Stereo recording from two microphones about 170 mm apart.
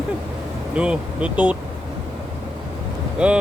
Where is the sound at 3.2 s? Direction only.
5° right (ahead or behind).